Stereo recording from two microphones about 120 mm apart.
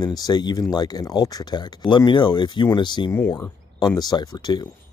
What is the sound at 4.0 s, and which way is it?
Speech, 35° left (ahead or behind).